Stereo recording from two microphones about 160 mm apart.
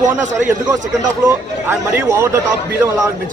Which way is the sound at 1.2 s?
15° right (ahead or behind).